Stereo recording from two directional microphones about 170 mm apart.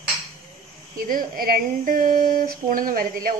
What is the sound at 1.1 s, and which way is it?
Speech, 55° right (ahead or behind).